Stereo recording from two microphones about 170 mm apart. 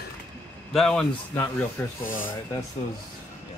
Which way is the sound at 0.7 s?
Centre (ahead or behind).